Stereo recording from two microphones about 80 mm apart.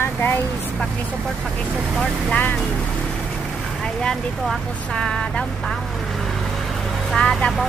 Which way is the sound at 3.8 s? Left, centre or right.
Centre.